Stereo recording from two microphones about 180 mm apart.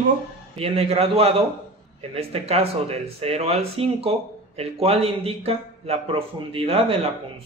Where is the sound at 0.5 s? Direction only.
35° right (ahead or behind).